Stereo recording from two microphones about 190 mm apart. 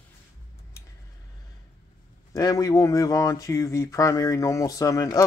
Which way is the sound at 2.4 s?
20° left (ahead or behind).